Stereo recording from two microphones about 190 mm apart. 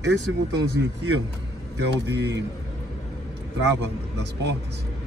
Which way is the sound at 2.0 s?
65° right (ahead or behind).